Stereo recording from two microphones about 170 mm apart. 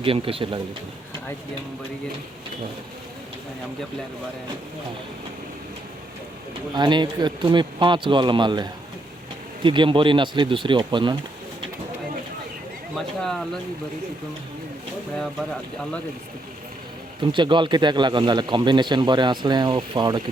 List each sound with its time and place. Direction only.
0.0 s speech: 30° right (ahead or behind)
6.7 s speech: 25° right (ahead or behind)
9.6 s speech: 30° right (ahead or behind)
13.0 s speech: centre (ahead or behind)
17.3 s speech: 30° right (ahead or behind)